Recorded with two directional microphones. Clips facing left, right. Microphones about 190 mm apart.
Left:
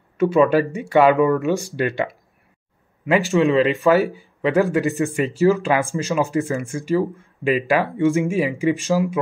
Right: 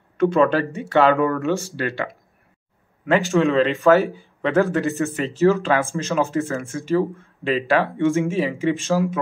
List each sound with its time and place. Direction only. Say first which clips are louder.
0.2 s speech: left 2 dB; 10° left (ahead or behind)
3.1 s speech: left 1 dB; centre (ahead or behind)
8.9 s speech: left 1 dB; centre (ahead or behind)